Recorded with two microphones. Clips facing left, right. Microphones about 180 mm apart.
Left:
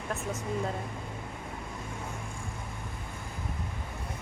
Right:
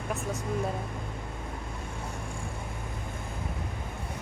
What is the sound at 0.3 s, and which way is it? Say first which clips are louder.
Speech: right 1 dB; 15° right (ahead or behind).